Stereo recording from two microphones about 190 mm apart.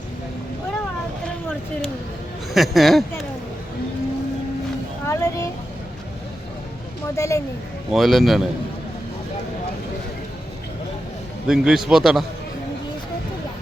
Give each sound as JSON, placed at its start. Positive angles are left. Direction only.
{"t": 2.5, "sound": "a man's voice", "side_deg": 0}
{"t": 5.0, "sound": "a sound", "side_deg": 15}
{"t": 7.2, "sound": "speech", "side_deg": 15}
{"t": 7.9, "sound": "a man's voice", "side_deg": 0}
{"t": 11.4, "sound": "a man's voice", "side_deg": -5}